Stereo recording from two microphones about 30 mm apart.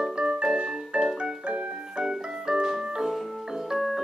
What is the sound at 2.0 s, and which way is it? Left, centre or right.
Organ, right.